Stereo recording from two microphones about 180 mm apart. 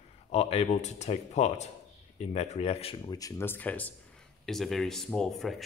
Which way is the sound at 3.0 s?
20° left (ahead or behind).